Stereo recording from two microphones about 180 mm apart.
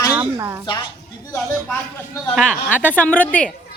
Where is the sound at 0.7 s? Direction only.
25° left (ahead or behind).